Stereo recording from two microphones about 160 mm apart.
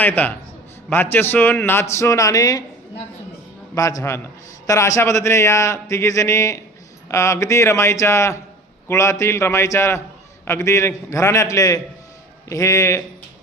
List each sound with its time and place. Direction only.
0.0 s a man's voice: 10° left (ahead or behind)
3.8 s a man's voice: 20° left (ahead or behind)